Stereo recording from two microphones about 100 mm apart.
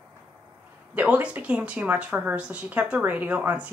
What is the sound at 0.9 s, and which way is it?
A woman's voice, 15° right (ahead or behind).